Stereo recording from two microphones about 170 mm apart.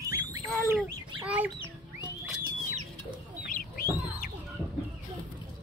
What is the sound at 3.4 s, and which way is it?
Chicken, 60° left (ahead or behind).